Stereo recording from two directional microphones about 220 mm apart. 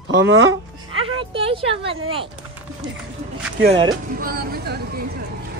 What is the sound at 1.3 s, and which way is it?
Speech, 25° right (ahead or behind).